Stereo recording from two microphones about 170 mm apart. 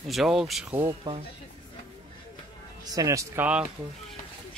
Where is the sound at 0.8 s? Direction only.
30° right (ahead or behind).